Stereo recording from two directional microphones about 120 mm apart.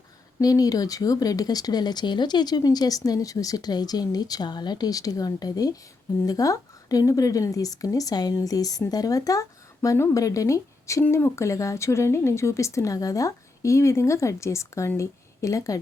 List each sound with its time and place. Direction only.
0.3 s speech: 30° left (ahead or behind)